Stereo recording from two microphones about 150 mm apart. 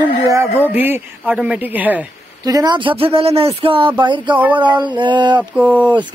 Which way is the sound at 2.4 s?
25° right (ahead or behind).